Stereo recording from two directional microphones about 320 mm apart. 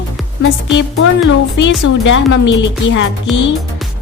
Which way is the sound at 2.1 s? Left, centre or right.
Left.